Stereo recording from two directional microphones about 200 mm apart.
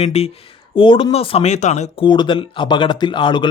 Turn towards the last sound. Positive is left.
turn(degrees=25)  # may be behind; listen again after turning